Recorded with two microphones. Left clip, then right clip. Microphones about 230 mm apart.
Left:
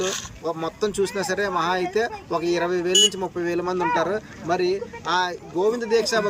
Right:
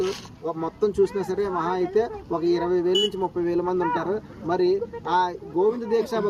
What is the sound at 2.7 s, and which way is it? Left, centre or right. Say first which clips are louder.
Speech: left 4 dB; centre.